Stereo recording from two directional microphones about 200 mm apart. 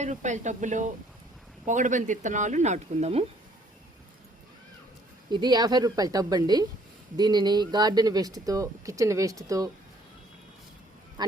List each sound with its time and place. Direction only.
0.0 s speech: 35° right (ahead or behind)
5.3 s a woman's voice: 20° right (ahead or behind)
11.2 s speech: 20° right (ahead or behind)